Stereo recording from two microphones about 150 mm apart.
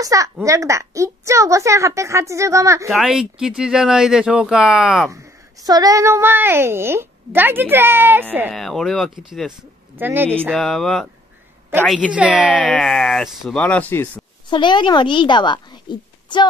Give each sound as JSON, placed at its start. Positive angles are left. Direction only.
{"t": 0.0, "sound": "a woman's voice", "side_deg": -20}
{"t": 2.9, "sound": "speech", "side_deg": -5}
{"t": 5.1, "sound": "speech", "side_deg": -25}
{"t": 8.5, "sound": "speech", "side_deg": 0}
{"t": 9.9, "sound": "speech", "side_deg": -15}
{"t": 10.5, "sound": "speech", "side_deg": 0}
{"t": 12.1, "sound": "speech", "side_deg": -10}
{"t": 12.5, "sound": "speech", "side_deg": 5}
{"t": 13.6, "sound": "speech", "side_deg": 10}
{"t": 14.5, "sound": "a woman's voice", "side_deg": 30}